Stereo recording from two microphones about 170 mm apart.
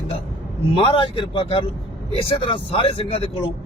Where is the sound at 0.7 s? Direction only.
30° left (ahead or behind).